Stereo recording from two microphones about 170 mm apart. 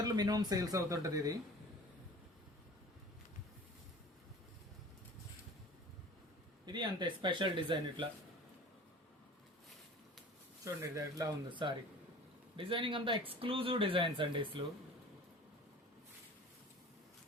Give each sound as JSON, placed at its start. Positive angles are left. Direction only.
{"t": 0.0, "sound": "speech", "side_deg": -20}
{"t": 6.7, "sound": "speech", "side_deg": -25}
{"t": 10.6, "sound": "speech", "side_deg": -20}